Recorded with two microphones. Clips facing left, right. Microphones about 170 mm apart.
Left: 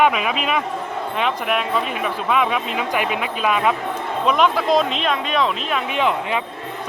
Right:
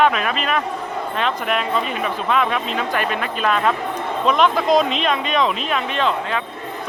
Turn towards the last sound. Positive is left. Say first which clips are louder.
# left 1 dB
turn(degrees=15)  # may be behind; listen again after turning